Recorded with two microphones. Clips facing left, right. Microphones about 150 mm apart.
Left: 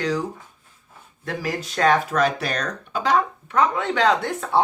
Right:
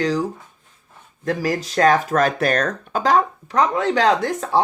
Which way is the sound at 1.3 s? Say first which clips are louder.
Right 6 dB; 40° right (ahead or behind).